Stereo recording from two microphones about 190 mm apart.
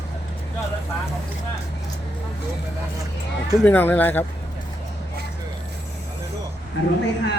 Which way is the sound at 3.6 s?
10° left (ahead or behind).